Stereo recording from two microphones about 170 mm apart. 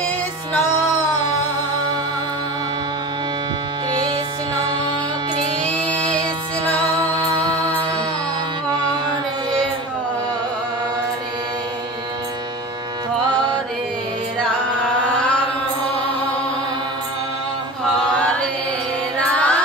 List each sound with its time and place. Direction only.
3.9 s music: 25° right (ahead or behind)
5.7 s music: 5° left (ahead or behind)
7.2 s music: 25° right (ahead or behind)
15.0 s chant: 5° left (ahead or behind)
18.0 s chant: 5° left (ahead or behind)
19.1 s music: 5° left (ahead or behind)